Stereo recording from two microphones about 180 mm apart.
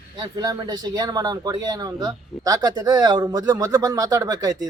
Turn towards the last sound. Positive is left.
turn(degrees=-20)  # may be behind; listen again after turning